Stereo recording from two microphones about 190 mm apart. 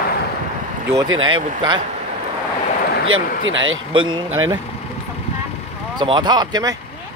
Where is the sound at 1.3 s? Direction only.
25° right (ahead or behind).